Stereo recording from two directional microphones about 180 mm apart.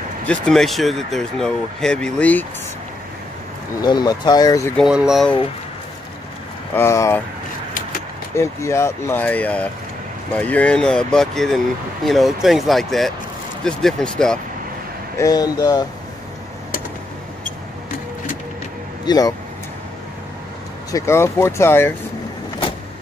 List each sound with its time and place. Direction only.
0.3 s speech: centre (ahead or behind)
3.8 s speech: 20° left (ahead or behind)
4.7 s speech: 5° right (ahead or behind)
6.7 s speech: 15° left (ahead or behind)
8.4 s speech: 15° left (ahead or behind)
15.1 s speech: 20° left (ahead or behind)
19.0 s speech: 20° left (ahead or behind)
20.9 s speech: 15° left (ahead or behind)